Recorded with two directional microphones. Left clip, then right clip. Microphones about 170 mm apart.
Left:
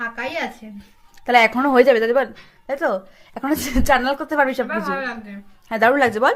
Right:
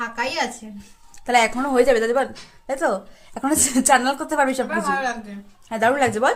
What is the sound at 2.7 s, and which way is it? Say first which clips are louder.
A woman's voice: left 1 dB; 15° left (ahead or behind).